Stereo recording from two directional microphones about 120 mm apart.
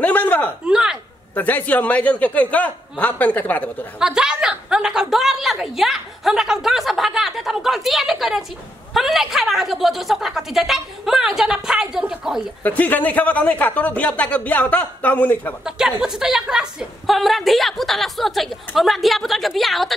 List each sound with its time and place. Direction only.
0.0 s a sound: 15° left (ahead or behind)
0.7 s a sound: 5° right (ahead or behind)
1.3 s speech: 15° left (ahead or behind)
4.0 s a woman's voice: 5° right (ahead or behind)
12.6 s speech: 15° left (ahead or behind)
15.6 s a woman's voice: 5° right (ahead or behind)